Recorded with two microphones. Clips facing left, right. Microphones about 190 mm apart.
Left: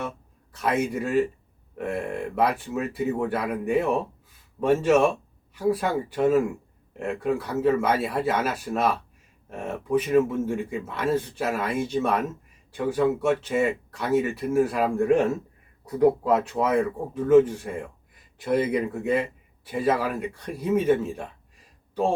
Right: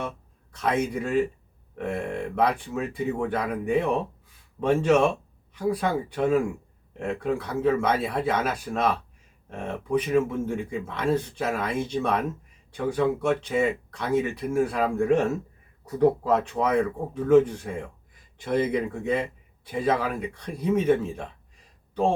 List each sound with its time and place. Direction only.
0.5 s a man's voice: 5° left (ahead or behind)